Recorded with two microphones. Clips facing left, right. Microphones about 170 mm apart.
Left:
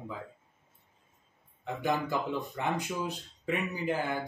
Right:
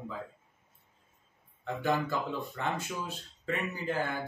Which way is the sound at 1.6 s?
15° left (ahead or behind).